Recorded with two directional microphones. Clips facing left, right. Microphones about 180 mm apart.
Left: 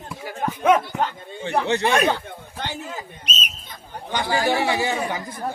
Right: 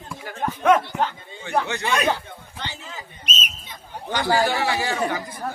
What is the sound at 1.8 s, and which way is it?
Speech, 55° left (ahead or behind).